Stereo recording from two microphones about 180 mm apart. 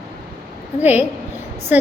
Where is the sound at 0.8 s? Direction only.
10° right (ahead or behind).